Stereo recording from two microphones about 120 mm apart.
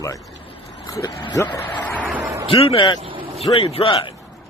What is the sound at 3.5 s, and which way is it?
Speech, 55° left (ahead or behind).